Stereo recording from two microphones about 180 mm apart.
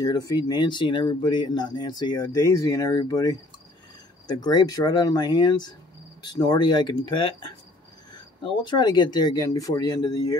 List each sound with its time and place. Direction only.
0.0 s speech: 20° left (ahead or behind)
8.6 s speech: 25° left (ahead or behind)